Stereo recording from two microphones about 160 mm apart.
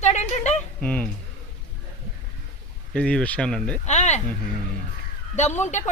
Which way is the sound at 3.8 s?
45° left (ahead or behind).